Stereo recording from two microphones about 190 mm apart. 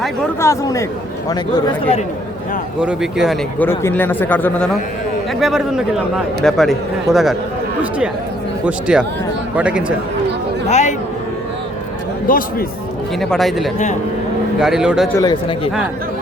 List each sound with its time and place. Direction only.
0.3 s a man's voice: 15° left (ahead or behind)
2.8 s a man's voice: 5° right (ahead or behind)
3.6 s a man's voice: 10° left (ahead or behind); by 9.8 s 5° right (ahead or behind)
10.7 s a sound: 35° left (ahead or behind)
12.3 s a man's voice: 45° left (ahead or behind)
13.1 s a man's voice: centre (ahead or behind)
15.1 s speech: 20° left (ahead or behind)